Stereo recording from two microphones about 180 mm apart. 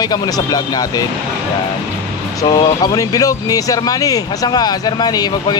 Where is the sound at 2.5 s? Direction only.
20° left (ahead or behind).